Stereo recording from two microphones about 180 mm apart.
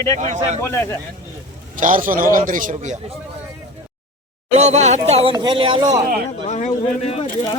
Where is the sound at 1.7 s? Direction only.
45° right (ahead or behind).